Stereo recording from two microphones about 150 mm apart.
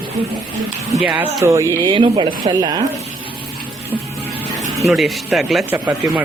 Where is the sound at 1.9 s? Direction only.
35° right (ahead or behind).